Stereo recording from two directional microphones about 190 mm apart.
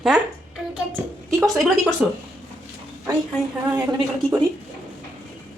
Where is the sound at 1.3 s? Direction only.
Centre (ahead or behind).